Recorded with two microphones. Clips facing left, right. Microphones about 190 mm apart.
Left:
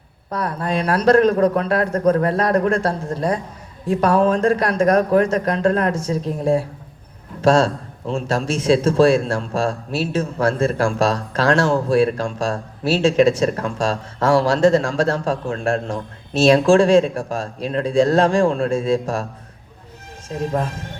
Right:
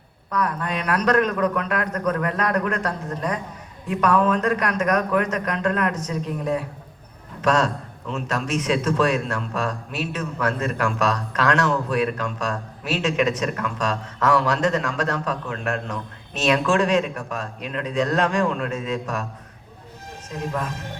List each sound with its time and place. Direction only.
0.3 s a man's voice: 35° left (ahead or behind)
20.3 s a man's voice: 35° left (ahead or behind)